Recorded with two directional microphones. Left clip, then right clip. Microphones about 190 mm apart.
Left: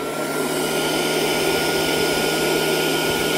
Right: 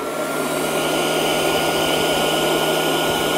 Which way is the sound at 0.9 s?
45° right (ahead or behind).